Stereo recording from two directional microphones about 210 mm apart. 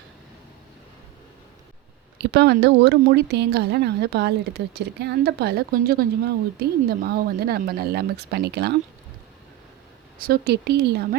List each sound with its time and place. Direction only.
2.1 s speech: 55° right (ahead or behind)
10.2 s speech: 45° right (ahead or behind)